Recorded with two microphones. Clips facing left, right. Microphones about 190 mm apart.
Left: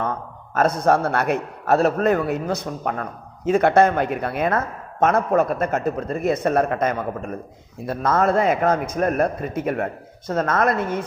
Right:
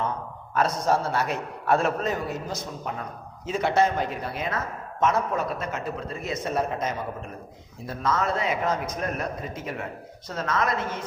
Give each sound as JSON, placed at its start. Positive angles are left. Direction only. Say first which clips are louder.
{"t": 0.0, "sound": "a man's voice", "louder": "left 3 dB", "side_deg": 55}
{"t": 1.7, "sound": "a man's voice", "louder": "left 5 dB", "side_deg": 40}
{"t": 2.0, "sound": "speech", "louder": "left 9 dB", "side_deg": 60}